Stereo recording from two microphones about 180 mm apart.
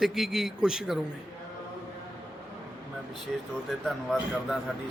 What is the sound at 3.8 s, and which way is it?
Speech, centre (ahead or behind).